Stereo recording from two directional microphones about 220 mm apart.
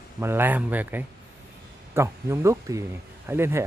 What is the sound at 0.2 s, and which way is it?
Speech, 10° right (ahead or behind).